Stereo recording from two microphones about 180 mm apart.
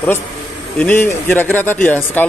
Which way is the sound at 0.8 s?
10° left (ahead or behind).